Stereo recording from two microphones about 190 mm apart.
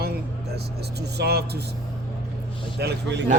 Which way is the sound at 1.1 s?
60° right (ahead or behind).